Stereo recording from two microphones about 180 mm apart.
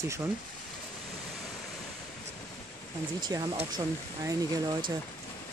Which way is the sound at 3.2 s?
20° right (ahead or behind).